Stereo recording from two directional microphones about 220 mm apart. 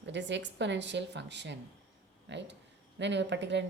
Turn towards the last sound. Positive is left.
turn(degrees=-55)  # may be behind; listen again after turning